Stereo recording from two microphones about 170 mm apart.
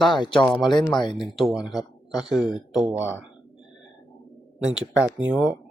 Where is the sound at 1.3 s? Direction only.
Centre (ahead or behind).